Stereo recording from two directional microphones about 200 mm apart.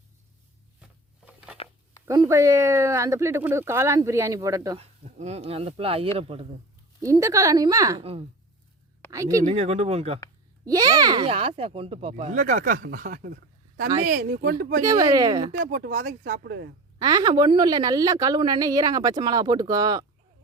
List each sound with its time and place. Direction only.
0.8 s a sound: 5° right (ahead or behind)
2.0 s speech: 15° right (ahead or behind)
4.8 s a woman's voice: 35° right (ahead or behind)
7.0 s speech: 15° right (ahead or behind)
9.0 s speech: 15° right (ahead or behind)
9.4 s speech: 35° right (ahead or behind)
10.7 s a woman's voice: 20° right (ahead or behind); by 14.8 s 45° right (ahead or behind)
14.8 s a woman's voice: 20° right (ahead or behind)
15.6 s speech: 45° right (ahead or behind)
17.0 s a woman's voice: 20° right (ahead or behind)